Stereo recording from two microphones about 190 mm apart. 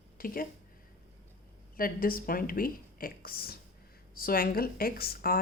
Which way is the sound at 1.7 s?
50° left (ahead or behind).